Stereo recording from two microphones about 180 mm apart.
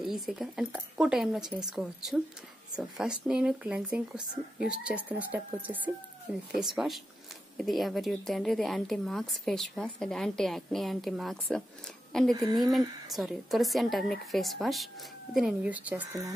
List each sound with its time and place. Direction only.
0.0 s a woman's voice: centre (ahead or behind)
12.3 s speech: 20° right (ahead or behind)
13.1 s a woman's voice: centre (ahead or behind)